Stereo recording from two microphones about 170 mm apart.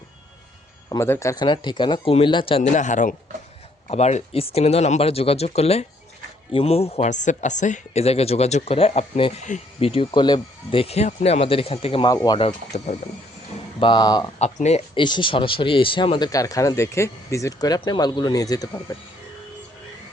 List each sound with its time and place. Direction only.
0.9 s speech: 15° left (ahead or behind); by 2.6 s 30° left (ahead or behind)
2.7 s a man's voice: 45° left (ahead or behind); by 12.4 s 20° left (ahead or behind)
12.4 s speech: 40° left (ahead or behind)
13.7 s speech: 30° left (ahead or behind)
14.3 s speech: 40° left (ahead or behind)
15.0 s speech: 30° left (ahead or behind)